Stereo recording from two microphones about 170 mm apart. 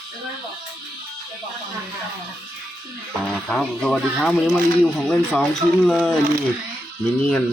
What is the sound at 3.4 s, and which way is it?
Speech, 5° left (ahead or behind).